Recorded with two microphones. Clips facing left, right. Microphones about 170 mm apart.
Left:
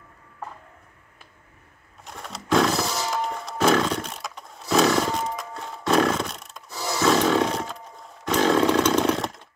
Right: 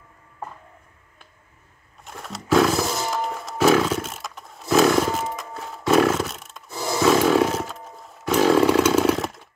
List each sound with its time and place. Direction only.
2.0 s music: centre (ahead or behind)